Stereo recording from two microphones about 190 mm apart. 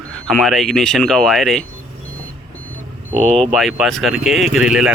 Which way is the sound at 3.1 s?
5° left (ahead or behind).